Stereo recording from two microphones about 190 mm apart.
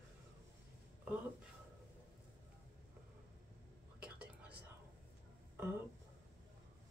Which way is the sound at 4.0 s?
5° right (ahead or behind).